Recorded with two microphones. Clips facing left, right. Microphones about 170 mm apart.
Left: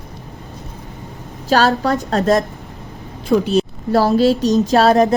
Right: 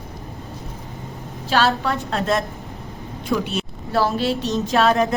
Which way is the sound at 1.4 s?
40° left (ahead or behind).